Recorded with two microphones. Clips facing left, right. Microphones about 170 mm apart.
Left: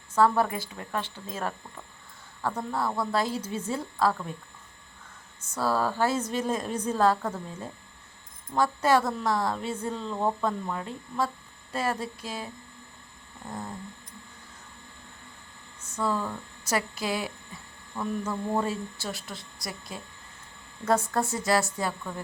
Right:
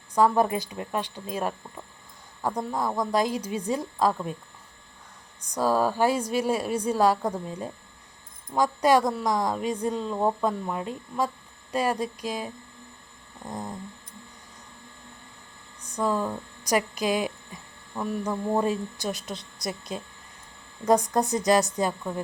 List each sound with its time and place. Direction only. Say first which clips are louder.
0.1 s a woman's voice: right 2 dB; 15° right (ahead or behind)
5.4 s a woman's voice: right 3 dB; 15° right (ahead or behind)
15.8 s a woman's voice: right 3 dB; 15° right (ahead or behind)